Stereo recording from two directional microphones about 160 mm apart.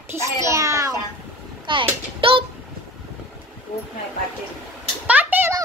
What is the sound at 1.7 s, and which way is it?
Speech, 30° right (ahead or behind).